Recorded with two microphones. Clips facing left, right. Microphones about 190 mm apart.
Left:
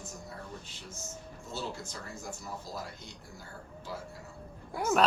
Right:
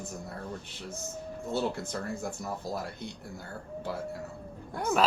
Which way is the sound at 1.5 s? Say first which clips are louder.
Right 8 dB; 60° right (ahead or behind).